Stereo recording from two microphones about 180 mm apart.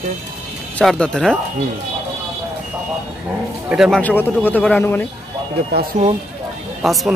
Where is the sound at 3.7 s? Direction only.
5° right (ahead or behind).